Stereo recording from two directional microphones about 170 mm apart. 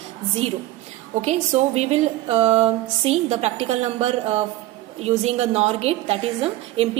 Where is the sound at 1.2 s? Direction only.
40° right (ahead or behind).